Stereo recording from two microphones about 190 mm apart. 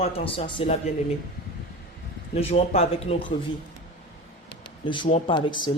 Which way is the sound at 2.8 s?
30° left (ahead or behind).